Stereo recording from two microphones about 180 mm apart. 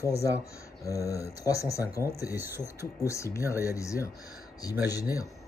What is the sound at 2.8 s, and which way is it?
Speech, 15° left (ahead or behind).